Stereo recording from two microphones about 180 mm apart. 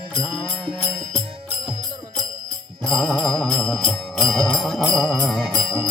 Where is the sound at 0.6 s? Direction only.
30° right (ahead or behind).